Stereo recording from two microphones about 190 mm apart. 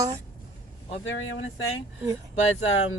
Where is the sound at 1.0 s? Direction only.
85° left.